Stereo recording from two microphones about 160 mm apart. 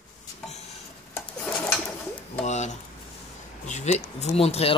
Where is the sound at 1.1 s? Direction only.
15° left (ahead or behind).